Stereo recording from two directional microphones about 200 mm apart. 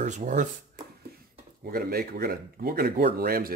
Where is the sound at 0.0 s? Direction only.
35° right (ahead or behind).